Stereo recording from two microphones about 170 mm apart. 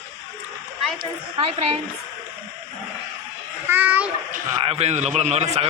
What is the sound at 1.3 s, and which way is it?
Speech, 35° right (ahead or behind).